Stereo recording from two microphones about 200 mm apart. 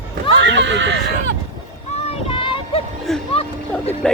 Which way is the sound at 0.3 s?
65° right (ahead or behind).